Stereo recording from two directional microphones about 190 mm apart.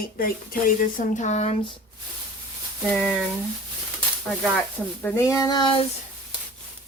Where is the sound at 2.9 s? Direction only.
Centre (ahead or behind).